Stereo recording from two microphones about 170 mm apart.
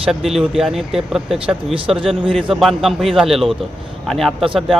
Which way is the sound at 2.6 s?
Centre (ahead or behind).